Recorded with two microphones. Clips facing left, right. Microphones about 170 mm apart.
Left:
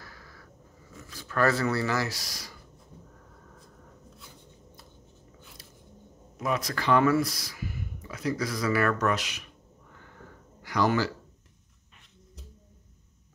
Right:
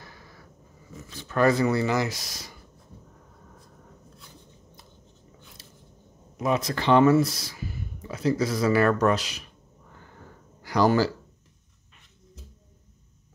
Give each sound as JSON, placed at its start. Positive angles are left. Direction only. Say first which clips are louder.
{"t": 0.0, "sound": "dog", "louder": "right 1 dB", "side_deg": -20}
{"t": 1.1, "sound": "speech", "louder": "right 4 dB", "side_deg": -20}
{"t": 5.6, "sound": "a sound", "louder": "right 1 dB", "side_deg": -25}
{"t": 6.3, "sound": "speech", "louder": "right 4 dB", "side_deg": -25}
{"t": 10.6, "sound": "speech", "louder": "right 4 dB", "side_deg": -35}